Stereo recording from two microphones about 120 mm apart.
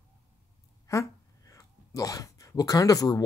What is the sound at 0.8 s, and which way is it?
Speech, 25° left (ahead or behind).